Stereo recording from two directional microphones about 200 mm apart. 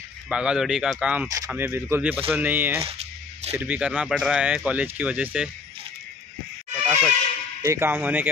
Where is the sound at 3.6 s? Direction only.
5° right (ahead or behind).